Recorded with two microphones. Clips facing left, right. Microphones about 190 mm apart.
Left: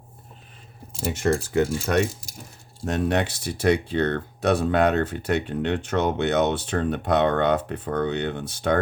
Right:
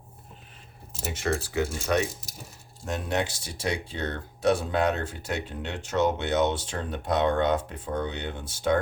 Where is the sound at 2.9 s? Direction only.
65° left (ahead or behind).